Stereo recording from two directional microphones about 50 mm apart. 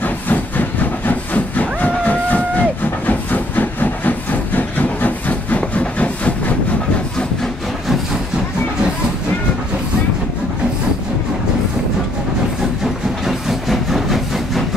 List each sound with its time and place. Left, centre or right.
0.0 s train: left
5.6 s a sound: left
12.8 s train: centre